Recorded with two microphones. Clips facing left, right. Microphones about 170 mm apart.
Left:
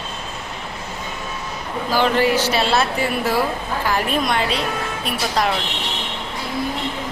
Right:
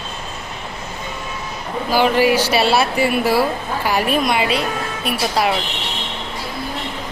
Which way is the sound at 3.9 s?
10° right (ahead or behind).